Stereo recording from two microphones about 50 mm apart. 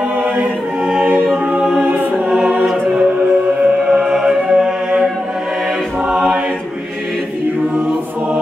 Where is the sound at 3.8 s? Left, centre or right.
Centre.